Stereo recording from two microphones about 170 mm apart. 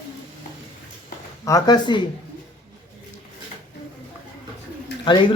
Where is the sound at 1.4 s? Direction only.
20° left (ahead or behind).